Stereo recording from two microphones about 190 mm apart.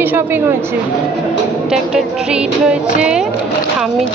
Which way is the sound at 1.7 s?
5° right (ahead or behind).